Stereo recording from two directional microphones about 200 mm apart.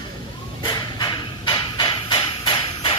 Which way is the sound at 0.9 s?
20° left (ahead or behind).